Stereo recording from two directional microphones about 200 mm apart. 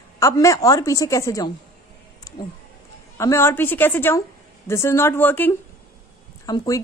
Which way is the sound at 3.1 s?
15° left (ahead or behind).